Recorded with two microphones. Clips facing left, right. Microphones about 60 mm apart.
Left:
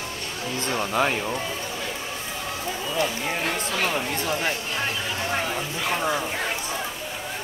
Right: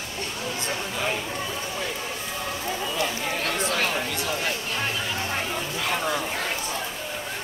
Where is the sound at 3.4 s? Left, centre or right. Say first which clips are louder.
Right 1 dB; centre.